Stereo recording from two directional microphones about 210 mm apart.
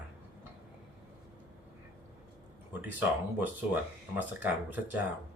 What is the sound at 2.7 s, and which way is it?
Speech, 10° right (ahead or behind).